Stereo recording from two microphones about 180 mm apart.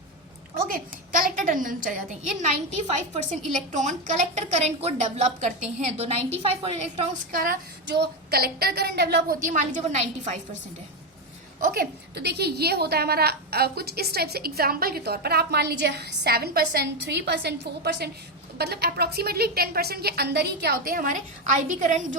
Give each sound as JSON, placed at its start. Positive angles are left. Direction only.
{"t": 0.7, "sound": "a woman's voice", "side_deg": -50}
{"t": 7.3, "sound": "a woman's voice", "side_deg": -50}
{"t": 7.9, "sound": "a woman's voice", "side_deg": -65}
{"t": 9.5, "sound": "a woman's voice", "side_deg": -45}
{"t": 11.6, "sound": "a woman's voice", "side_deg": -55}